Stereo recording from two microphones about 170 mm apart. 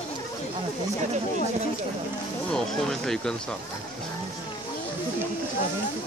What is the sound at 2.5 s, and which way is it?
Speech, 5° left (ahead or behind).